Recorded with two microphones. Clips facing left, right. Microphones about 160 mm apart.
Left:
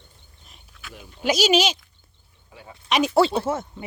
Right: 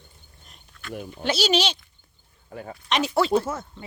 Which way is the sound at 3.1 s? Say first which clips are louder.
Left 1 dB; 30° left (ahead or behind).